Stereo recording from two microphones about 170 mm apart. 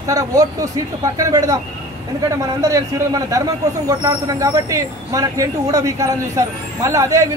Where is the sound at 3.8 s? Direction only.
20° right (ahead or behind).